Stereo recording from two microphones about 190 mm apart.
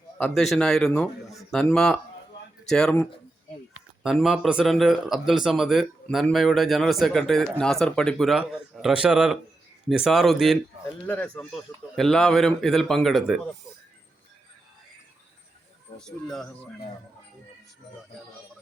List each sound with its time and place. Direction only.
0.2 s speech: centre (ahead or behind)
16.0 s speech: centre (ahead or behind)